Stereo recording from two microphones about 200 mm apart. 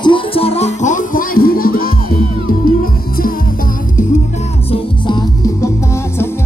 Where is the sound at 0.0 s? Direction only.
25° left (ahead or behind); by 3.3 s 45° left (ahead or behind).